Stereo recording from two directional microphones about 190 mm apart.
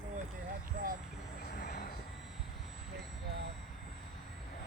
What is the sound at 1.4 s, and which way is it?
Vehicle, 55° left (ahead or behind).